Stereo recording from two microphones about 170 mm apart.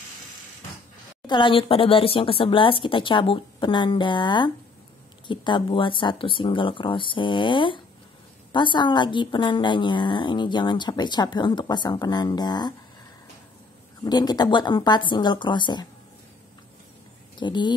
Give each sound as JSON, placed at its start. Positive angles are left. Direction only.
{"t": 1.2, "sound": "speech", "side_deg": 30}
{"t": 14.0, "sound": "speech", "side_deg": 25}
{"t": 17.4, "sound": "speech", "side_deg": 25}